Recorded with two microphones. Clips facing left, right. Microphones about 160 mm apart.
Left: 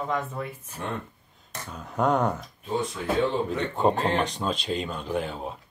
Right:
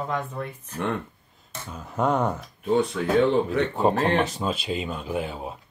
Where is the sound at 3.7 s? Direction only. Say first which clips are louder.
Even; 5° right (ahead or behind).